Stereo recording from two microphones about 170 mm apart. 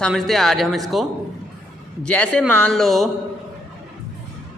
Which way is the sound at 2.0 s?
10° left (ahead or behind).